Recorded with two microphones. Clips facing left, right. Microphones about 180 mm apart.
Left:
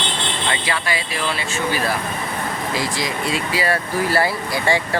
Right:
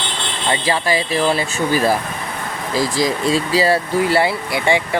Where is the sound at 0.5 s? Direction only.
35° right (ahead or behind).